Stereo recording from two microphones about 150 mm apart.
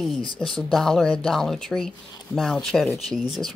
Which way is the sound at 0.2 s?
35° left (ahead or behind).